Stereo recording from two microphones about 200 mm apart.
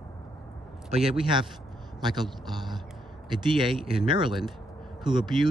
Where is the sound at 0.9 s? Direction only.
Centre (ahead or behind).